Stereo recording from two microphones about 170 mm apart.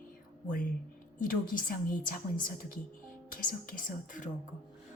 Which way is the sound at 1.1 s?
55° left (ahead or behind).